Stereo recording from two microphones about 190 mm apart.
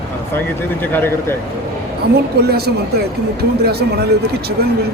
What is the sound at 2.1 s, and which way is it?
Speech, 55° right (ahead or behind).